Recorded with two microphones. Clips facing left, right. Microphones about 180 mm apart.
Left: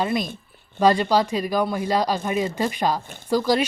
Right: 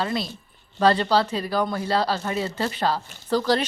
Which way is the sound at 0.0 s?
15° left (ahead or behind).